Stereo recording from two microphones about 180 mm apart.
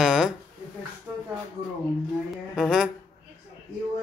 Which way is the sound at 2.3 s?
5° right (ahead or behind).